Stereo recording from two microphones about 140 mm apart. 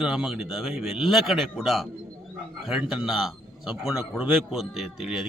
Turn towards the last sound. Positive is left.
turn(degrees=-5)  # may be behind; listen again after turning